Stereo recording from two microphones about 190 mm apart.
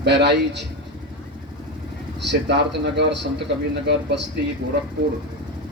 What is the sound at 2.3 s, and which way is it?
Speech, 65° right (ahead or behind).